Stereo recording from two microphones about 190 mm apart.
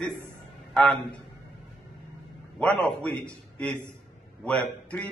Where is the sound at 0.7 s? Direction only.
5° left (ahead or behind).